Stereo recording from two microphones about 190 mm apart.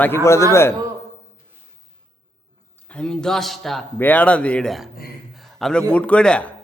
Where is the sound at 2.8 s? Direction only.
5° left (ahead or behind).